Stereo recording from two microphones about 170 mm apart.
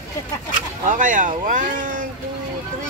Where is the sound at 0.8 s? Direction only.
50° right (ahead or behind).